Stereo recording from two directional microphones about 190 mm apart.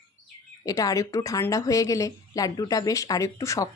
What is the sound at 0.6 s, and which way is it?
Speech, 20° left (ahead or behind).